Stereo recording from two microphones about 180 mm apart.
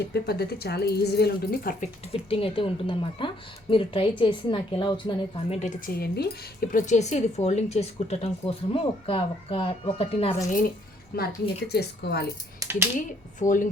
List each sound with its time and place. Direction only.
0.0 s a woman's voice: 65° left (ahead or behind)
2.1 s speech: 30° left (ahead or behind)
5.5 s speech: 40° left (ahead or behind)
11.1 s a woman's voice: 60° left (ahead or behind)
12.6 s a sound: 20° right (ahead or behind)
13.0 s speech: 45° left (ahead or behind)